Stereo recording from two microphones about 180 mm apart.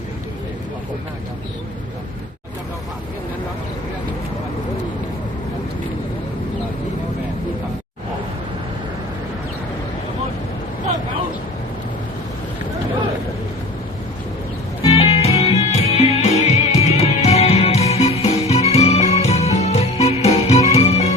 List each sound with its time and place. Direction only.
14.8 s music: 35° left (ahead or behind)